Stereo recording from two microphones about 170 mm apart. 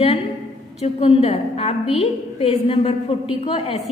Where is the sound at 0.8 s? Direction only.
35° left (ahead or behind).